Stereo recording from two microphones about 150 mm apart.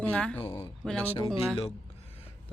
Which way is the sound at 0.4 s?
40° left (ahead or behind).